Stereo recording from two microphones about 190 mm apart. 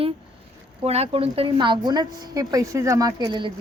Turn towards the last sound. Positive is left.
turn(degrees=-20)  # may be behind; listen again after turning